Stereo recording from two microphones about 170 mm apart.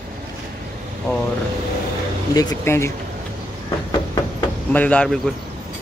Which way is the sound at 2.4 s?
20° left (ahead or behind).